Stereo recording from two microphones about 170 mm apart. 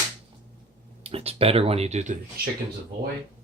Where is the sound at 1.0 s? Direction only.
35° right (ahead or behind).